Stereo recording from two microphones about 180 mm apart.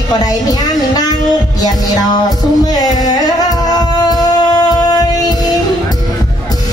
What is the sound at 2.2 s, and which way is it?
Music, 20° left (ahead or behind).